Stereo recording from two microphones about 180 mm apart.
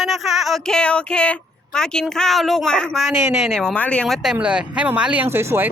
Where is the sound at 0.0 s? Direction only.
Centre (ahead or behind).